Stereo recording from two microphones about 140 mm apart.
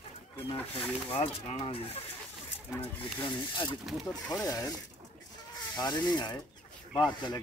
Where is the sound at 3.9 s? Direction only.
Centre (ahead or behind).